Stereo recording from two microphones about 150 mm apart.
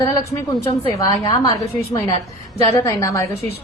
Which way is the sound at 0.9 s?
20° left (ahead or behind).